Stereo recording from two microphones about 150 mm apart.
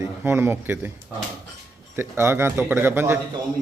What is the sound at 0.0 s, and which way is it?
Speech, 15° right (ahead or behind).